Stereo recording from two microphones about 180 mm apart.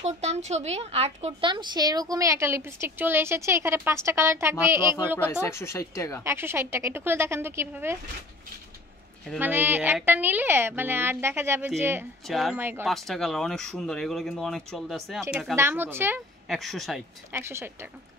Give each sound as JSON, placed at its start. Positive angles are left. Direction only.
{"t": 0.0, "sound": "a woman's voice", "side_deg": -35}
{"t": 5.2, "sound": "speech", "side_deg": 15}
{"t": 6.2, "sound": "a woman's voice", "side_deg": -15}
{"t": 9.4, "sound": "a woman's voice", "side_deg": -10}
{"t": 12.3, "sound": "speech", "side_deg": 0}
{"t": 12.5, "sound": "a woman's voice", "side_deg": -10}
{"t": 12.8, "sound": "speech", "side_deg": 0}
{"t": 15.5, "sound": "a woman's voice", "side_deg": -10}
{"t": 16.4, "sound": "speech", "side_deg": 0}
{"t": 17.3, "sound": "a woman's voice", "side_deg": -15}